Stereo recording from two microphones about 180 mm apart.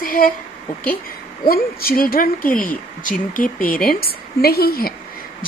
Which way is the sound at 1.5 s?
55° left (ahead or behind).